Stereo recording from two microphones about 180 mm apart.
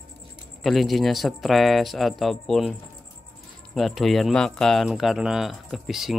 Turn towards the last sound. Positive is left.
turn(degrees=0)  # may be behind; listen again after turning